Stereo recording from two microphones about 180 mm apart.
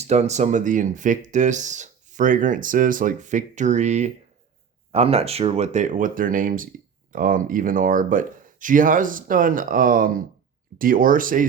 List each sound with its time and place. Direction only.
0.0 s speech: 40° right (ahead or behind)